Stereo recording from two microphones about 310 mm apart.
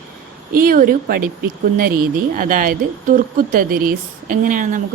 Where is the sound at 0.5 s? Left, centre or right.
Right.